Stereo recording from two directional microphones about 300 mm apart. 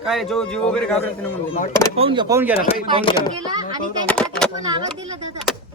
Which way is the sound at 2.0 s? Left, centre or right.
Centre.